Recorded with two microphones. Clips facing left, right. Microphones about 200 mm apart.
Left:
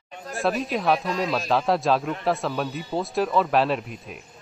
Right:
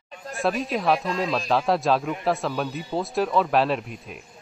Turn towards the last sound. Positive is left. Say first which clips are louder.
# even
turn(degrees=0)  # may be behind; listen again after turning